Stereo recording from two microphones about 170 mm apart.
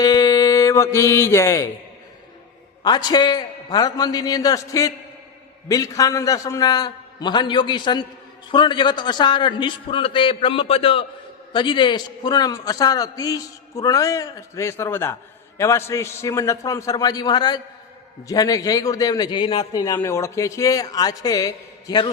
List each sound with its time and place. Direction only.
0.0 s music: 20° left (ahead or behind)
2.8 s a man's voice: 25° left (ahead or behind)